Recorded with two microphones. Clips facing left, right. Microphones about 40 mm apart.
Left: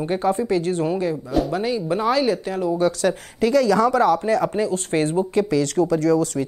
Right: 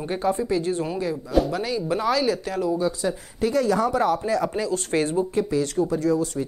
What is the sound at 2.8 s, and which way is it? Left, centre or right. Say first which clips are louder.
Speech: left 5 dB; left.